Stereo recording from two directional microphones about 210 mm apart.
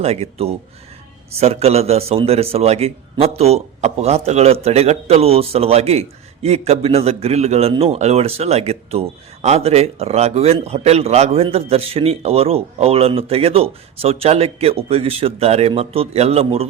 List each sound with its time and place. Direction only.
0.0 s a man's voice: 30° right (ahead or behind)